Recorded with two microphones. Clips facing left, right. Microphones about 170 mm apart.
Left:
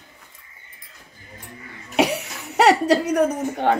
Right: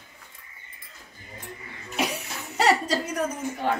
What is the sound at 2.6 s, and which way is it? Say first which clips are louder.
A woman's voice: left 7 dB; 70° left (ahead or behind).